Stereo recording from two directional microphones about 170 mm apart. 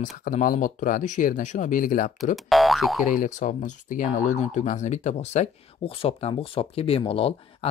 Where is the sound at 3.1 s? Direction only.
50° left (ahead or behind).